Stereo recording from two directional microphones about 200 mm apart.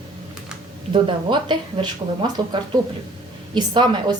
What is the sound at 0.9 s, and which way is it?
A woman's voice, 25° right (ahead or behind).